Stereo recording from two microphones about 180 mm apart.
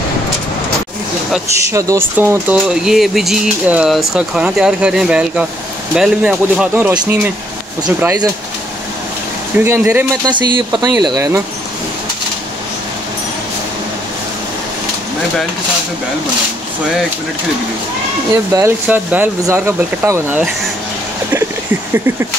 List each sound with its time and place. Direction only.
1.7 s speech: 15° right (ahead or behind)
2.7 s speech: centre (ahead or behind)
9.7 s speech: 15° right (ahead or behind)
18.5 s speech: 15° right (ahead or behind)
21.9 s speech: 15° right (ahead or behind)